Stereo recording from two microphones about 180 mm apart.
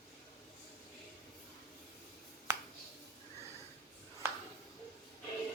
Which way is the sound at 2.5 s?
15° right (ahead or behind).